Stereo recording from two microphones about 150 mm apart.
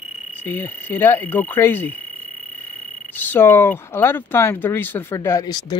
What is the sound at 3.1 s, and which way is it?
Speech, 15° left (ahead or behind).